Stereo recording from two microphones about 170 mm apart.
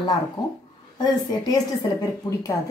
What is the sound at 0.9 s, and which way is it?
Speech, 25° left (ahead or behind).